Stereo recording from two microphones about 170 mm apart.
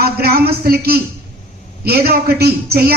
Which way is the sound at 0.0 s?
65° right (ahead or behind).